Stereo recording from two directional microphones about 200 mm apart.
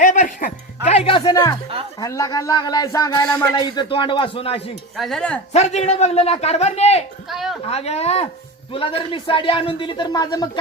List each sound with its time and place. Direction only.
0.0 s music: 40° left (ahead or behind)
0.9 s music: 30° left (ahead or behind)
2.0 s speech: 15° left (ahead or behind)
4.9 s speech: centre (ahead or behind)
5.5 s a man's voice: 35° left (ahead or behind)
7.3 s speech: centre (ahead or behind)
7.6 s a man's voice: 30° left (ahead or behind)